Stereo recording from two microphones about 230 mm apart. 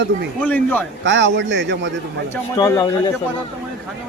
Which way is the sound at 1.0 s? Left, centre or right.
Right.